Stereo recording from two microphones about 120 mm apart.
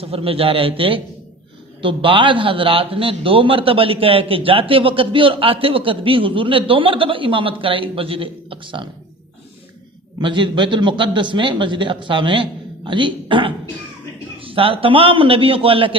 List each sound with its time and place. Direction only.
0.0 s a man's voice: 55° right (ahead or behind)
10.2 s a man's voice: 40° right (ahead or behind)